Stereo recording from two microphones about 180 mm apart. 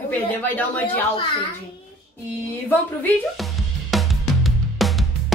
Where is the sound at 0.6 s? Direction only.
10° left (ahead or behind).